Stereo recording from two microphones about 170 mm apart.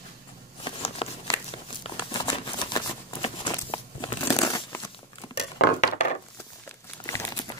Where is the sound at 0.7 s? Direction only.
35° left (ahead or behind).